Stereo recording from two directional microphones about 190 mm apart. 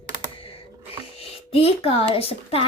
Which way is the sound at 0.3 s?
30° left (ahead or behind).